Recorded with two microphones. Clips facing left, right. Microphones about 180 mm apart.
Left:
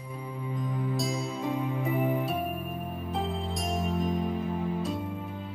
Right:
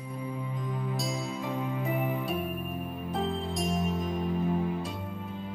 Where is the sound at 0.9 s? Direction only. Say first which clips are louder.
Left 2 dB; centre (ahead or behind).